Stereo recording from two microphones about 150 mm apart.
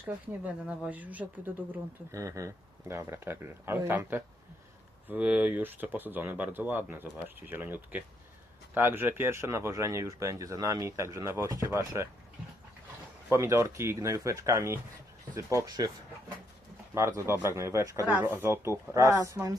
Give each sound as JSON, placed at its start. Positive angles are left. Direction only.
{"t": 0.6, "sound": "speech", "side_deg": -5}
{"t": 13.3, "sound": "speech", "side_deg": -15}
{"t": 16.9, "sound": "speech", "side_deg": -20}